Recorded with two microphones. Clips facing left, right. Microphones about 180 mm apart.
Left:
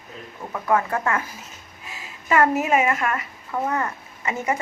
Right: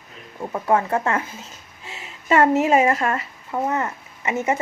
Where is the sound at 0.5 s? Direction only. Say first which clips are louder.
Right 2 dB; 25° right (ahead or behind).